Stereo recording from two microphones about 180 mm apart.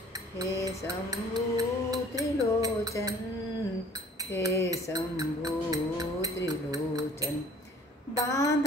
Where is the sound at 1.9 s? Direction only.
20° right (ahead or behind).